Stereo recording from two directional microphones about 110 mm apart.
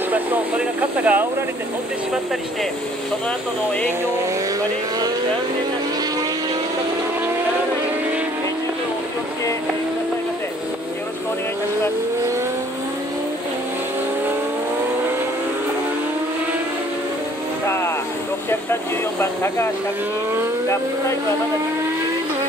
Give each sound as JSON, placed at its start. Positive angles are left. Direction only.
{"t": 0.1, "sound": "a sound", "side_deg": -15}
{"t": 17.6, "sound": "vehicle", "side_deg": 20}
{"t": 18.5, "sound": "speech", "side_deg": 20}